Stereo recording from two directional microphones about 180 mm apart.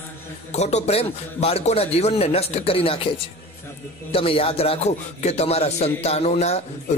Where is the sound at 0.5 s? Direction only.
40° left (ahead or behind).